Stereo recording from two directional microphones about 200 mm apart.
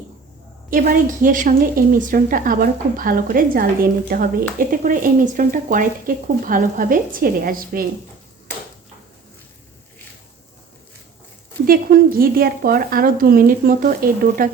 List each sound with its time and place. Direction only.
0.7 s a woman's voice: 45° right (ahead or behind)
11.6 s a woman's voice: 45° right (ahead or behind)